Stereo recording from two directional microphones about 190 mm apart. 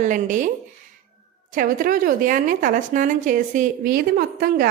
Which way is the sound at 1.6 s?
45° right (ahead or behind).